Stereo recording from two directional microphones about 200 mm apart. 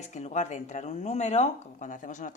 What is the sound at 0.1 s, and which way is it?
Speech, 35° left (ahead or behind).